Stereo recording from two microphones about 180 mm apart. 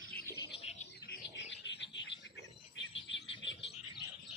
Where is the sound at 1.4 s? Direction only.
85° left.